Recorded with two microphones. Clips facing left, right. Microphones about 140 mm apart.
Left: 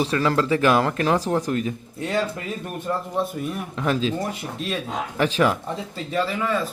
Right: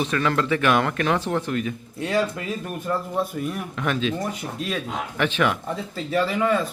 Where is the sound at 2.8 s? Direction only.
Centre (ahead or behind).